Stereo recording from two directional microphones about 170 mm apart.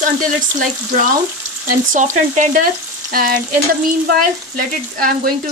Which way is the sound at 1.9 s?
45° right (ahead or behind).